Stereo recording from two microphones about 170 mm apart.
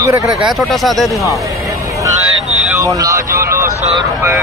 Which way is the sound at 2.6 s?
15° right (ahead or behind).